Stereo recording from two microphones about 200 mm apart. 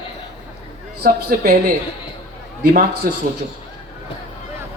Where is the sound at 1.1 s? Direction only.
45° right (ahead or behind).